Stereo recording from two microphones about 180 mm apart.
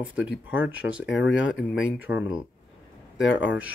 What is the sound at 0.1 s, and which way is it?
Speech, 10° right (ahead or behind).